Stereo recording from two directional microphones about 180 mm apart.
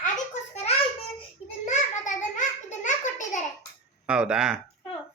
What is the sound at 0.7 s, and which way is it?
Child singing, 35° left (ahead or behind).